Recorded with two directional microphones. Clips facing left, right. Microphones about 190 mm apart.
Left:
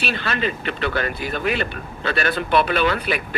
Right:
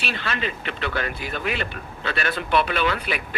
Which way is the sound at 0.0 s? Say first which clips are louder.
Left 4 dB; 40° left (ahead or behind).